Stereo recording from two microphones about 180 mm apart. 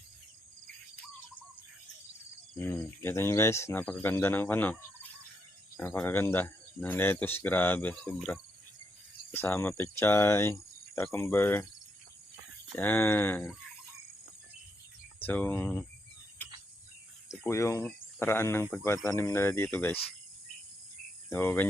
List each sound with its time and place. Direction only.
2.6 s speech: 10° left (ahead or behind)
5.8 s speech: 10° left (ahead or behind)
12.7 s speech: 10° left (ahead or behind)
15.2 s speech: 10° left (ahead or behind)
17.2 s speech: 15° left (ahead or behind)
21.2 s cricket: 10° left (ahead or behind)